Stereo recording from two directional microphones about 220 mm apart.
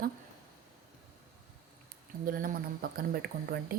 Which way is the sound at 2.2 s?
40° right (ahead or behind).